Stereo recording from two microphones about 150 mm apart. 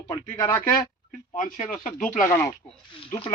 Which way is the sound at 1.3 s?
60° left (ahead or behind).